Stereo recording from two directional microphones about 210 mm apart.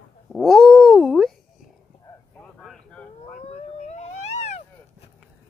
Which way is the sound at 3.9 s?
30° left (ahead or behind).